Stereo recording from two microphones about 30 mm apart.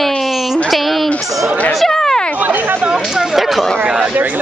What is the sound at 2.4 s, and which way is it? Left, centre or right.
Speech, right.